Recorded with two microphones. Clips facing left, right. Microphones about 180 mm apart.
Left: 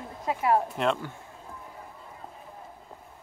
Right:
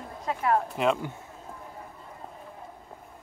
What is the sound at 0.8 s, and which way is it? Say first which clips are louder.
Speech: right 2 dB; 5° right (ahead or behind).